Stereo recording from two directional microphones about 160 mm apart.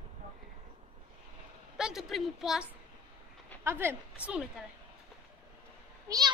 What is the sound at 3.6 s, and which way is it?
A woman's voice, 15° right (ahead or behind).